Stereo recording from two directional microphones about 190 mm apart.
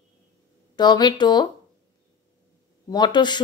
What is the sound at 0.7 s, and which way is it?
Speech, 20° left (ahead or behind).